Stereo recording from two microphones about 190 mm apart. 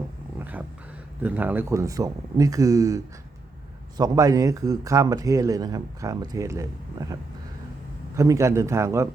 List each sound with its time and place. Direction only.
0.3 s dog: 10° right (ahead or behind)
1.2 s speech: 10° right (ahead or behind)